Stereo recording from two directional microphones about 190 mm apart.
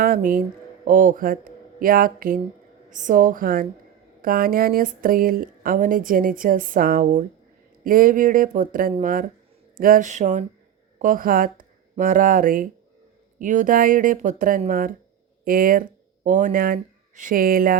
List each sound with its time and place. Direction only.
0.0 s speech: 50° right (ahead or behind)